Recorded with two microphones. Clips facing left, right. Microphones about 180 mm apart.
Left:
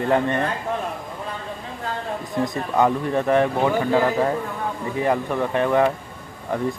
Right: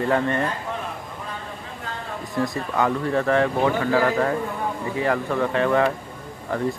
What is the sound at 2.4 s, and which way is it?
A man's voice, 20° left (ahead or behind).